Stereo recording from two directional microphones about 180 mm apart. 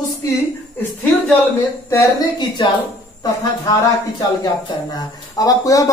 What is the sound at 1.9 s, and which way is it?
Speech, 20° left (ahead or behind).